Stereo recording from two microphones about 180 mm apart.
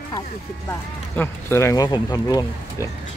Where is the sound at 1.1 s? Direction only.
15° left (ahead or behind).